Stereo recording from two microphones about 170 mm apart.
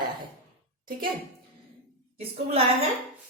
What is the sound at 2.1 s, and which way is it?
Speech, 35° right (ahead or behind).